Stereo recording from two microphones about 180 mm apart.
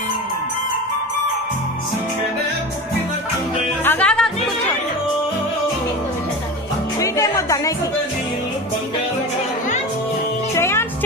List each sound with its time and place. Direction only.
3.8 s music: 10° left (ahead or behind)
7.0 s music: 20° left (ahead or behind)
10.5 s music: 15° left (ahead or behind)